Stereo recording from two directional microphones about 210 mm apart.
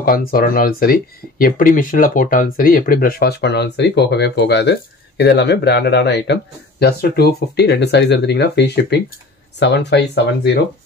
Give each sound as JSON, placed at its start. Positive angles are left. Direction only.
{"t": 0.0, "sound": "speech", "side_deg": 45}